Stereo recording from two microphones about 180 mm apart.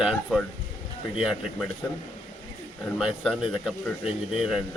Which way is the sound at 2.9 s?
Centre (ahead or behind).